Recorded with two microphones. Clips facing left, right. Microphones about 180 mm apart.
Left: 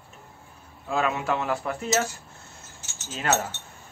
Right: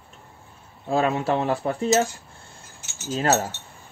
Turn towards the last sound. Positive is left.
turn(degrees=-35)  # may be behind; listen again after turning